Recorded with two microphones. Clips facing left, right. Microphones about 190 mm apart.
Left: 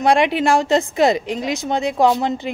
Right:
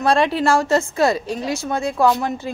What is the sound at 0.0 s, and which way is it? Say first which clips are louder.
A woman's voice: left 1 dB; 15° left (ahead or behind).